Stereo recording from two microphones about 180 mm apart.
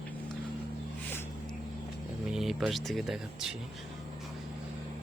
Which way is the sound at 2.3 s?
Centre (ahead or behind).